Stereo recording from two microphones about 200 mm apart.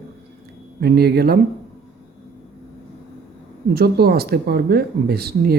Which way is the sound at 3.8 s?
50° right (ahead or behind).